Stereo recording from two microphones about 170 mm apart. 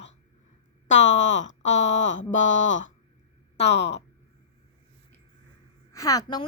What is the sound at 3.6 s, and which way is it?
Speech, 40° left (ahead or behind).